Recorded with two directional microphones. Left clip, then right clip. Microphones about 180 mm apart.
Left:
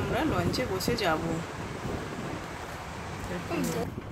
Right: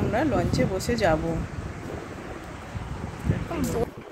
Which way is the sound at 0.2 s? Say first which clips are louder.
Right 5 dB; 40° right (ahead or behind).